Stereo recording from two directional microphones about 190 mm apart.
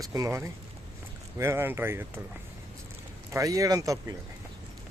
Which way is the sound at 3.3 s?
15° right (ahead or behind).